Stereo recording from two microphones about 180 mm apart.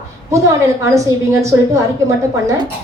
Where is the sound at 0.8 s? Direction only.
15° right (ahead or behind).